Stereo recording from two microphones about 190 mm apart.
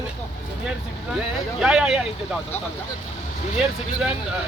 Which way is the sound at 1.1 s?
5° right (ahead or behind).